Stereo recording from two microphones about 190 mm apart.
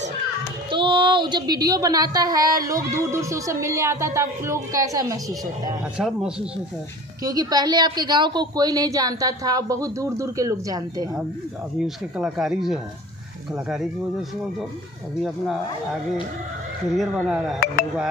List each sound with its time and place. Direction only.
0.7 s a woman's voice: 25° right (ahead or behind)
5.9 s speech: 5° right (ahead or behind)
7.2 s a woman's voice: 20° right (ahead or behind)
11.8 s speech: centre (ahead or behind)
15.2 s speech: centre (ahead or behind)
16.9 s speech: centre (ahead or behind)